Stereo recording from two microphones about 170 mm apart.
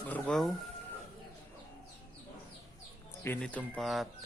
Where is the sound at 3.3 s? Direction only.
10° left (ahead or behind).